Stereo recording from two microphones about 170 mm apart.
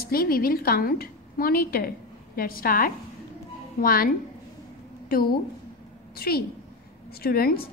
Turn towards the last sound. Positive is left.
turn(degrees=60)  # may be behind; listen again after turning